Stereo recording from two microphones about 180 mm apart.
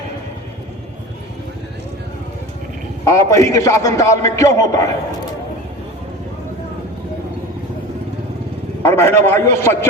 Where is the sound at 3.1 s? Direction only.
15° left (ahead or behind).